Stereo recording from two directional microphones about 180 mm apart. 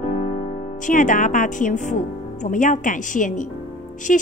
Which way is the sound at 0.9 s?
45° left (ahead or behind).